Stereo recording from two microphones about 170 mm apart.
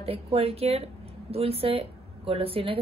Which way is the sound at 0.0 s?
35° right (ahead or behind).